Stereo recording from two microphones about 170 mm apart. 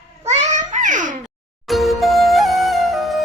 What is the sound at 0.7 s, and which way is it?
Baby cry, 45° right (ahead or behind).